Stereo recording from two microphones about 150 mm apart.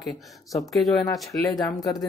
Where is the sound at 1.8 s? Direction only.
25° left (ahead or behind).